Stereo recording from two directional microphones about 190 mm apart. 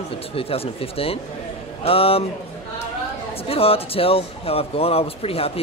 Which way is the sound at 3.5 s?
30° left (ahead or behind).